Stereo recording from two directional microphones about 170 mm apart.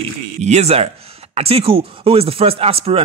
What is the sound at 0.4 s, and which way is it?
Speech, 40° right (ahead or behind).